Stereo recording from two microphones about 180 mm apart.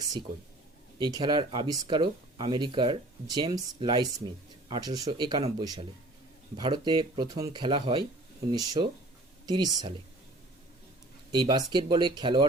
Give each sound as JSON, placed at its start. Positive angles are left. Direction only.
{"t": 0.9, "sound": "speech", "side_deg": -25}
{"t": 11.3, "sound": "speech", "side_deg": -25}